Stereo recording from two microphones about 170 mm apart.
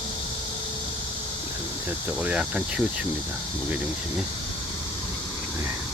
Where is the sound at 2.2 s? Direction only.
10° right (ahead or behind).